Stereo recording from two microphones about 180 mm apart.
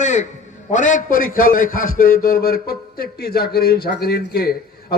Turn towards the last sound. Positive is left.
turn(degrees=60)  # may be behind; listen again after turning